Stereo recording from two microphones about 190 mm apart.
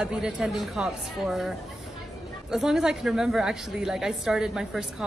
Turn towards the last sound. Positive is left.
turn(degrees=0)  # may be behind; listen again after turning